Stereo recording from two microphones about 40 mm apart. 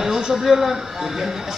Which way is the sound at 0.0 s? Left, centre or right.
Centre.